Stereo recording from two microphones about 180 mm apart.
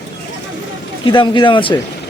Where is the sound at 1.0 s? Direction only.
25° left (ahead or behind).